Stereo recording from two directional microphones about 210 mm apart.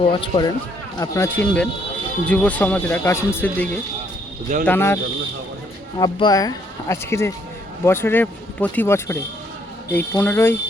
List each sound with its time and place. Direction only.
0.0 s speech: 25° left (ahead or behind)
6.0 s speech: 20° left (ahead or behind)